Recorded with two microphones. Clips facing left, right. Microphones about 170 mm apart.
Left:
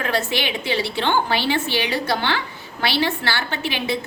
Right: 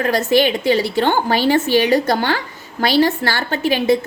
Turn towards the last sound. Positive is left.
turn(degrees=-45)  # may be behind; listen again after turning